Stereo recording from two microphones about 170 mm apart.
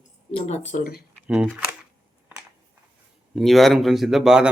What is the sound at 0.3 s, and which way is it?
Speech, 40° left (ahead or behind).